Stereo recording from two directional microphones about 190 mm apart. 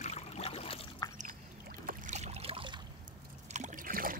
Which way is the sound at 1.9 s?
40° right (ahead or behind).